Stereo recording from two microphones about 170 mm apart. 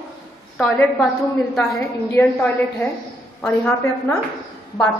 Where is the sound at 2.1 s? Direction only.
10° left (ahead or behind).